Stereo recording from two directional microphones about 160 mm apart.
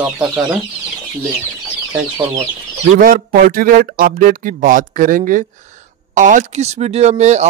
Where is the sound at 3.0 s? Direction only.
60° right (ahead or behind).